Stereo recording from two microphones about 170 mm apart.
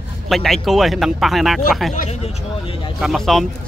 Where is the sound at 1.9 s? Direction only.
45° left (ahead or behind).